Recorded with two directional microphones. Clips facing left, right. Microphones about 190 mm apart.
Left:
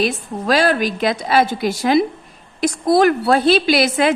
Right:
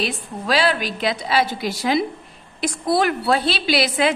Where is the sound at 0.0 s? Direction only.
45° left (ahead or behind).